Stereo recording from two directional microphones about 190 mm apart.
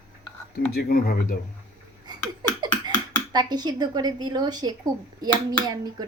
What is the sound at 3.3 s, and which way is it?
Speech, 20° right (ahead or behind).